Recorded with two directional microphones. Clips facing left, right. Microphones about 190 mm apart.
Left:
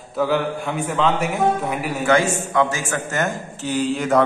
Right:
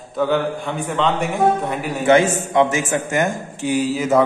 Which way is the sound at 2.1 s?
20° right (ahead or behind).